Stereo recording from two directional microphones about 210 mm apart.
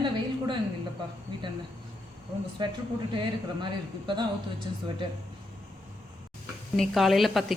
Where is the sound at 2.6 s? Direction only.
20° right (ahead or behind).